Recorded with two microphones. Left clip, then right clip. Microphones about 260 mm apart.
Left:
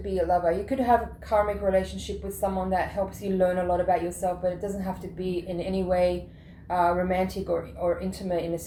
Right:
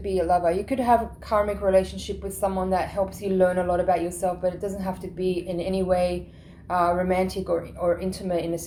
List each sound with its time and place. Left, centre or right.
0.1 s a woman's voice: right